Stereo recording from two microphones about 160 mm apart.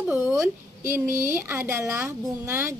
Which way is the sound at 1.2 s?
15° right (ahead or behind).